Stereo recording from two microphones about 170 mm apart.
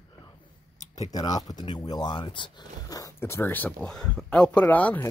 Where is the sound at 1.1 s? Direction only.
25° left (ahead or behind).